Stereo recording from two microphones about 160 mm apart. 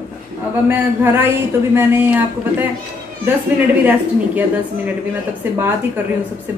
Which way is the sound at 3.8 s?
10° right (ahead or behind).